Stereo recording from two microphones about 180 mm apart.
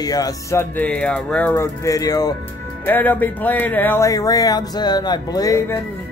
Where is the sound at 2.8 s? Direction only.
10° left (ahead or behind).